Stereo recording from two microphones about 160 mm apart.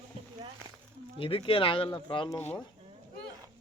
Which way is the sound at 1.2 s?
35° left (ahead or behind).